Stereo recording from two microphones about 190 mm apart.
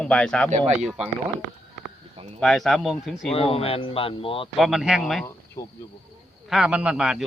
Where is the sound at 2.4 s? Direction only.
Centre (ahead or behind).